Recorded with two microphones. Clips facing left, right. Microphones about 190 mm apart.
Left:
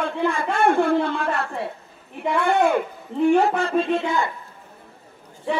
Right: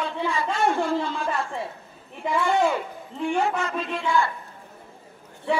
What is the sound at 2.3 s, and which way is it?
Speech, 60° left (ahead or behind).